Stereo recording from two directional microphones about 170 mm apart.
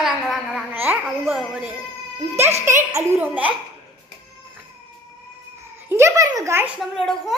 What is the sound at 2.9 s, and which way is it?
Speech, 10° right (ahead or behind).